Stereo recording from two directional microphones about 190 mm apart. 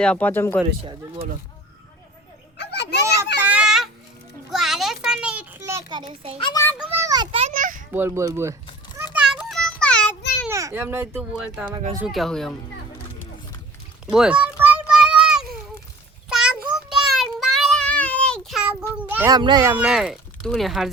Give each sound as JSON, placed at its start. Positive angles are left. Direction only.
{"t": 0.0, "sound": "speech", "side_deg": 5}
{"t": 2.6, "sound": "children playing", "side_deg": 60}
{"t": 3.4, "sound": "a sound", "side_deg": -5}
{"t": 6.4, "sound": "a child's voice", "side_deg": 15}
{"t": 6.7, "sound": "children playing", "side_deg": -15}
{"t": 7.9, "sound": "speech", "side_deg": -15}
{"t": 9.1, "sound": "a sound", "side_deg": -5}
{"t": 10.5, "sound": "speech", "side_deg": -15}
{"t": 14.1, "sound": "a sound", "side_deg": -5}
{"t": 16.3, "sound": "child singing", "side_deg": -5}
{"t": 19.3, "sound": "speech", "side_deg": -20}
{"t": 19.7, "sound": "speech", "side_deg": -5}